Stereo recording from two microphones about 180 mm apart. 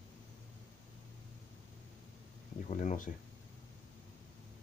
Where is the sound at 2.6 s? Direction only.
45° left (ahead or behind).